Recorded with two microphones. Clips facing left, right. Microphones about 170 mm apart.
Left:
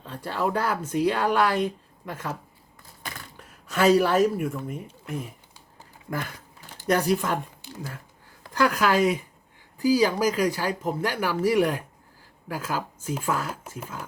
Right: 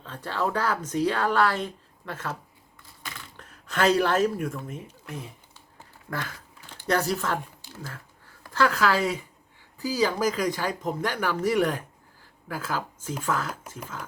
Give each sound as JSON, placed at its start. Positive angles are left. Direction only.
{"t": 0.0, "sound": "speech", "side_deg": 10}
{"t": 3.0, "sound": "a sound", "side_deg": 45}
{"t": 3.3, "sound": "a woman's voice", "side_deg": 10}
{"t": 6.8, "sound": "speech", "side_deg": 15}